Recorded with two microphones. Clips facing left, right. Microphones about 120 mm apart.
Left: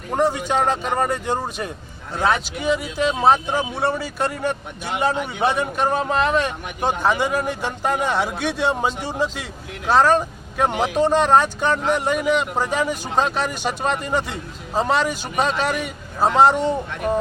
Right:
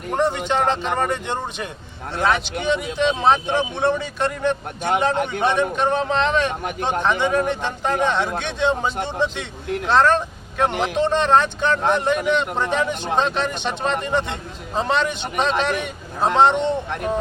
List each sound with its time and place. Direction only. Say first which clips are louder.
0.1 s a man's voice: left 1 dB; 5° left (ahead or behind)
5.1 s a man's voice: right 4 dB; 55° right (ahead or behind)
5.4 s a man's voice: left 1 dB; 5° left (ahead or behind)